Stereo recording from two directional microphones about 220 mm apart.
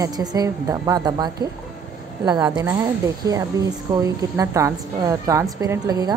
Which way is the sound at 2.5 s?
15° right (ahead or behind).